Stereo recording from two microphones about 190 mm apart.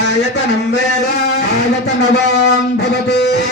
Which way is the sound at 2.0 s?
60° left (ahead or behind).